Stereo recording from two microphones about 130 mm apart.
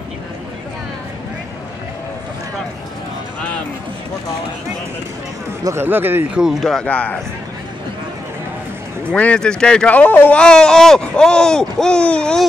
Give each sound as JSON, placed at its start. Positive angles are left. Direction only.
{"t": 5.6, "sound": "speech", "side_deg": -20}
{"t": 6.4, "sound": "speech", "side_deg": 0}
{"t": 9.1, "sound": "speech", "side_deg": 10}